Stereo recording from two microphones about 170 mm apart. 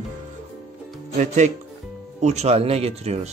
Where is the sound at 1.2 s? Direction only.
45° right (ahead or behind).